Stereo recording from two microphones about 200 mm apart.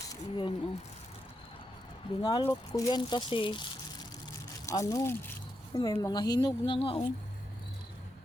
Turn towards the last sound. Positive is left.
turn(degrees=30)  # may be behind; listen again after turning